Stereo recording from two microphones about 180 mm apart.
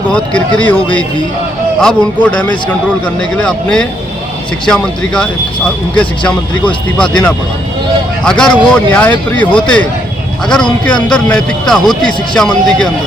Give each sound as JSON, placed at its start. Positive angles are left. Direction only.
{"t": 0.1, "sound": "speech", "side_deg": 5}
{"t": 1.8, "sound": "speech", "side_deg": 5}